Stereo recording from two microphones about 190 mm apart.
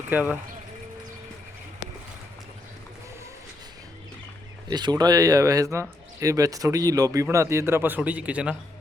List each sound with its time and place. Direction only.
0.1 s speech: 10° right (ahead or behind)
4.7 s speech: 20° right (ahead or behind); by 8.5 s 5° right (ahead or behind)